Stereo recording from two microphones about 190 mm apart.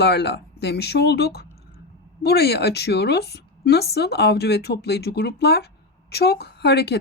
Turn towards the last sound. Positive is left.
turn(degrees=60)  # may be behind; listen again after turning